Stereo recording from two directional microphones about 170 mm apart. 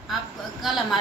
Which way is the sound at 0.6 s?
Centre (ahead or behind).